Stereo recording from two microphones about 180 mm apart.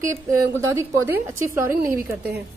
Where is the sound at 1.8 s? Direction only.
50° right (ahead or behind).